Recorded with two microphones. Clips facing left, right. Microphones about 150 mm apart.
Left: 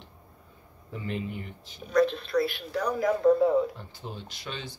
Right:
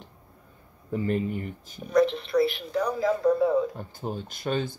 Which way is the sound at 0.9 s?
45° right (ahead or behind).